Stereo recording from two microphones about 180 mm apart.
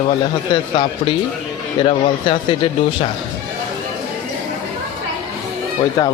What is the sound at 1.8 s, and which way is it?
Speech, 30° left (ahead or behind).